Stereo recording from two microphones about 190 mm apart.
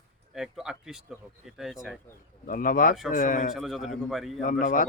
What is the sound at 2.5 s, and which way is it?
A man's voice, 45° left (ahead or behind).